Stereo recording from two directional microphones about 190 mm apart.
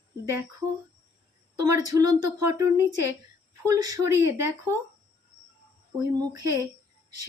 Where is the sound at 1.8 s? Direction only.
20° right (ahead or behind).